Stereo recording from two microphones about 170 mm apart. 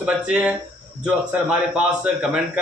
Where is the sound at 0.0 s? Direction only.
5° right (ahead or behind).